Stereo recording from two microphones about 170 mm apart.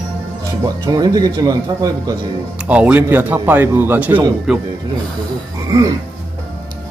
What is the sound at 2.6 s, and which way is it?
Speech, 5° right (ahead or behind).